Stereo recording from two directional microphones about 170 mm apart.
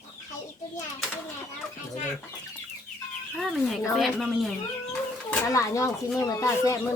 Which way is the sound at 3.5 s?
Centre (ahead or behind).